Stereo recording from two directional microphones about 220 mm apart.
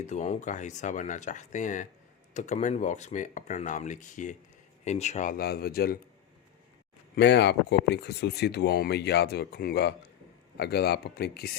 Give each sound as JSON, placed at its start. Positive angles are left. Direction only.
{"t": 0.0, "sound": "speech", "side_deg": 30}
{"t": 7.2, "sound": "speech", "side_deg": 50}